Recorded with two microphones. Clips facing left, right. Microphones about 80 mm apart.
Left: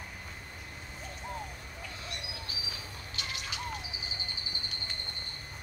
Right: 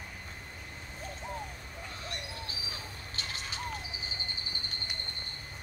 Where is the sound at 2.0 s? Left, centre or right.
Right.